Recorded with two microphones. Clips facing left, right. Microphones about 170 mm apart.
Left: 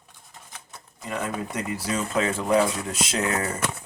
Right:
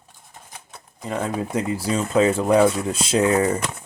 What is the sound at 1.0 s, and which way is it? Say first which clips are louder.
Speech: right 4 dB; 30° right (ahead or behind).